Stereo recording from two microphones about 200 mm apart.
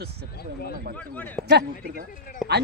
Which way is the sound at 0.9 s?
5° left (ahead or behind).